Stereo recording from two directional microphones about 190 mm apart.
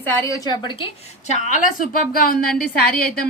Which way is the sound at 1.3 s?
40° left (ahead or behind).